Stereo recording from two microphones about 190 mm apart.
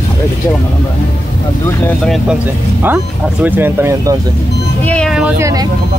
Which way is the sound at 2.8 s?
10° right (ahead or behind).